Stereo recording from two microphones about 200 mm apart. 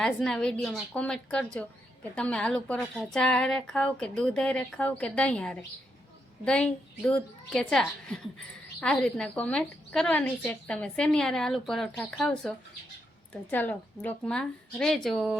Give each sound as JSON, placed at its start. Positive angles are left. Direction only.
{"t": 0.0, "sound": "a woman's voice", "side_deg": 5}